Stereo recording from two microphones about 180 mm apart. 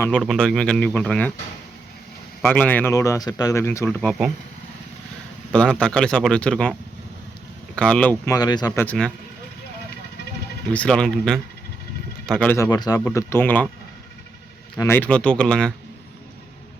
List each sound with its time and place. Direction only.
0.2 s speech: centre (ahead or behind)
2.5 s speech: 10° left (ahead or behind)
5.5 s speech: 5° left (ahead or behind)
7.8 s speech: 5° left (ahead or behind)
8.2 s speech: 20° left (ahead or behind)
10.7 s speech: 5° left (ahead or behind)
12.7 s speech: 20° left (ahead or behind)
13.1 s speech: 10° left (ahead or behind)
14.8 s speech: 10° left (ahead or behind)